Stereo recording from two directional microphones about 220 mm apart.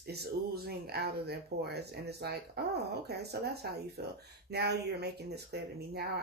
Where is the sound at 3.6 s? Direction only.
45° right (ahead or behind).